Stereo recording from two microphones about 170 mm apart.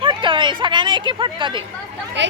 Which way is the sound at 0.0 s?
30° right (ahead or behind).